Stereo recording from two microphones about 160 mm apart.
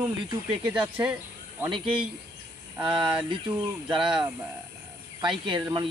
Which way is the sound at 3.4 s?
10° right (ahead or behind).